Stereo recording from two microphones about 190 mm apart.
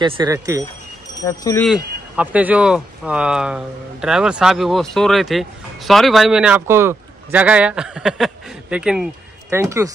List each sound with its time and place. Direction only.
0.0 s speech: 20° right (ahead or behind)
1.2 s speech: 15° left (ahead or behind)
1.6 s speech: 5° right (ahead or behind)